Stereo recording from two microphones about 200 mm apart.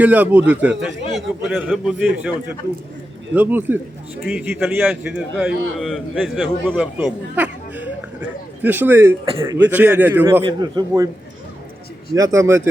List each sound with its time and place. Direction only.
0.0 s a man's voice: 10° right (ahead or behind)
3.3 s a man's voice: 10° right (ahead or behind)
10.4 s a man's voice: 20° right (ahead or behind)
12.1 s a man's voice: 15° right (ahead or behind)